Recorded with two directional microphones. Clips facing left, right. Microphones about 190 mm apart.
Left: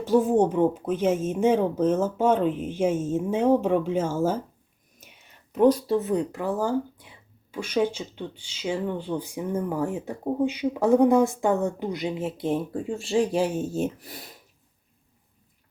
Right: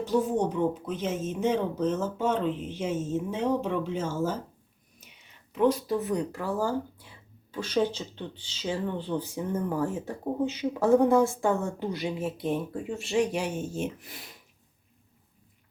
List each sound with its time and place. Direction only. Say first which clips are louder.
0.0 s speech: left 6 dB; 50° left (ahead or behind)
5.5 s speech: left 5 dB; 30° left (ahead or behind)